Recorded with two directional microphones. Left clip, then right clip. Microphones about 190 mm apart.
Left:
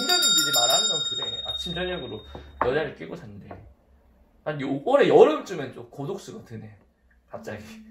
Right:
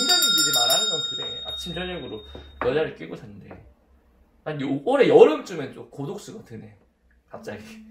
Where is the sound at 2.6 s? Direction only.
10° right (ahead or behind).